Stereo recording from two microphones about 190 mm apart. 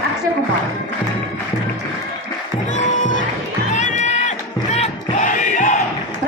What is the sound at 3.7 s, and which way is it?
Crowd, 35° left (ahead or behind).